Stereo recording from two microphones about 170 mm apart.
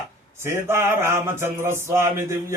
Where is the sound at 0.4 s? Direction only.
15° right (ahead or behind).